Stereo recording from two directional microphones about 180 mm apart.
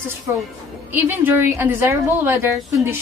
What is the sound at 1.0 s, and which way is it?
A woman's voice, 10° right (ahead or behind).